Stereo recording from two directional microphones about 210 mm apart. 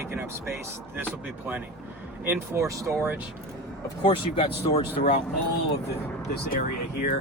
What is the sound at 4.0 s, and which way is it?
Speech, 25° left (ahead or behind).